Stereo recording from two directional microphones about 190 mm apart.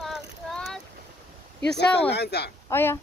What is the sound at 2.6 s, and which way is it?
Speech, 15° left (ahead or behind).